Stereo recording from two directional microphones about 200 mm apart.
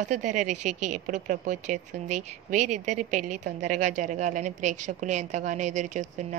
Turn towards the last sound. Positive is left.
turn(degrees=-40)  # may be behind; listen again after turning